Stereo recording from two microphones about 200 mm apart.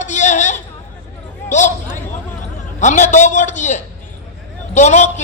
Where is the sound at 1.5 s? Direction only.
35° left (ahead or behind).